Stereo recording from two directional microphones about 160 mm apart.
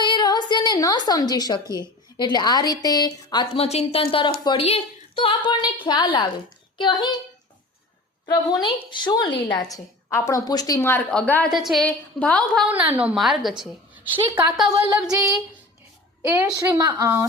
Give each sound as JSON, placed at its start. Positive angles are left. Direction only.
{"t": 0.0, "sound": "a sound", "side_deg": 30}
{"t": 1.7, "sound": "a woman's voice", "side_deg": 25}
{"t": 8.3, "sound": "a woman's voice", "side_deg": 25}
{"t": 12.7, "sound": "a woman's voice", "side_deg": -10}
{"t": 14.8, "sound": "a woman's voice", "side_deg": -10}
{"t": 16.2, "sound": "a woman's voice", "side_deg": -15}